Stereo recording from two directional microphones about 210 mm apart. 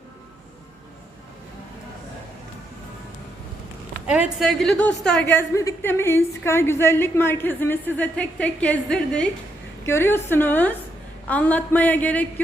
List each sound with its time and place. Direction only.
4.0 s a woman's voice: 5° right (ahead or behind)